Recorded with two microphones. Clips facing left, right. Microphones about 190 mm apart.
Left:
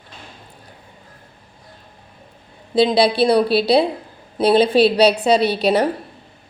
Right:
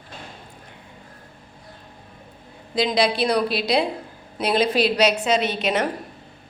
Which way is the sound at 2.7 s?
30° left (ahead or behind).